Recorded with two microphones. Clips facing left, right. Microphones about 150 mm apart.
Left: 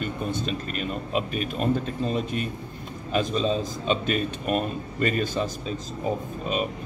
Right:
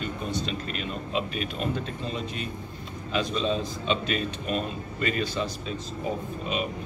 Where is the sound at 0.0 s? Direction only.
50° left (ahead or behind).